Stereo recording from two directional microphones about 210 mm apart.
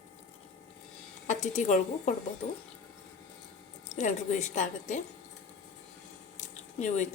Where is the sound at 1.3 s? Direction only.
35° left (ahead or behind).